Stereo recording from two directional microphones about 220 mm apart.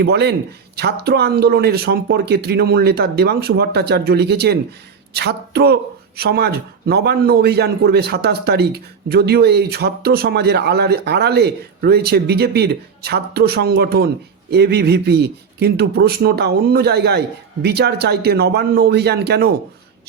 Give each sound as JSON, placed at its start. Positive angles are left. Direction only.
{"t": 0.0, "sound": "speech", "side_deg": -50}